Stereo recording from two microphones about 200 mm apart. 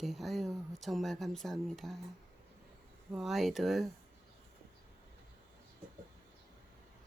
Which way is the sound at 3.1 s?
Centre (ahead or behind).